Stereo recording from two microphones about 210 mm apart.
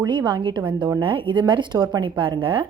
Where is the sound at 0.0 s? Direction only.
20° right (ahead or behind).